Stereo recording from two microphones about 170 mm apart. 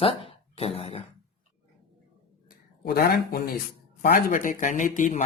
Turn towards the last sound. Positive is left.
turn(degrees=50)  # may be behind; listen again after turning